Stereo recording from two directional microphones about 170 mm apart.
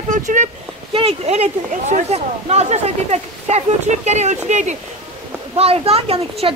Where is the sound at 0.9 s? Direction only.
35° right (ahead or behind).